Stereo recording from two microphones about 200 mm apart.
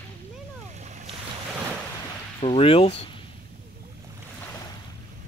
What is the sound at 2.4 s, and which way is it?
Speech, 25° left (ahead or behind).